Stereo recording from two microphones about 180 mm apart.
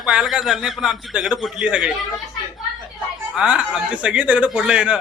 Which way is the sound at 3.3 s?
5° right (ahead or behind).